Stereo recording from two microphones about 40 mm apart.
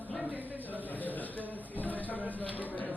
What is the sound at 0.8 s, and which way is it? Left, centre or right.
Speech, left.